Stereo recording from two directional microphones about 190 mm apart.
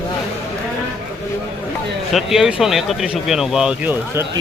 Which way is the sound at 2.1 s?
Centre (ahead or behind).